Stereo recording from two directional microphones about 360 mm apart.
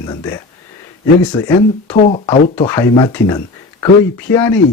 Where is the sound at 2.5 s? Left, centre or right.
Centre.